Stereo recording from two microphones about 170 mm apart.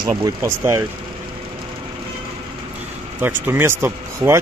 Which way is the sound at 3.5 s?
15° right (ahead or behind).